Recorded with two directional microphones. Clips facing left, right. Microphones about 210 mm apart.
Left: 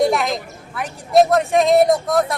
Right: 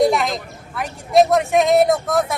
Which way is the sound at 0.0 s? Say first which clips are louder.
Right 1 dB; centre (ahead or behind).